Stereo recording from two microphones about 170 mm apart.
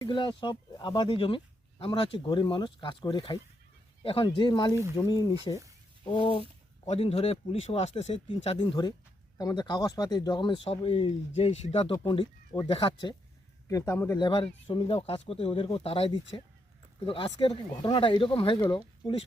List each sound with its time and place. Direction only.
0.0 s speech: 25° left (ahead or behind)
13.7 s speech: 20° left (ahead or behind)
14.2 s speech: 30° left (ahead or behind)